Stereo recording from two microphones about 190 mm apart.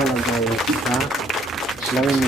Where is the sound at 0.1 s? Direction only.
Centre (ahead or behind).